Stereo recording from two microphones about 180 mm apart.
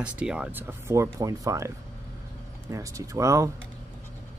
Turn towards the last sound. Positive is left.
turn(degrees=-15)  # may be behind; listen again after turning